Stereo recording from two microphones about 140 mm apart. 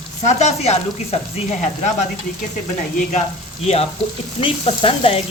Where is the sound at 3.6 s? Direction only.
50° left (ahead or behind).